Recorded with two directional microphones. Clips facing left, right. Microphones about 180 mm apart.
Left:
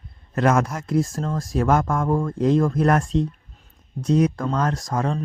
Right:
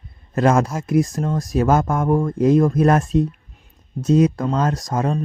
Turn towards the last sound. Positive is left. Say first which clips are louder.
# right 3 dB
turn(degrees=-20)  # may be behind; listen again after turning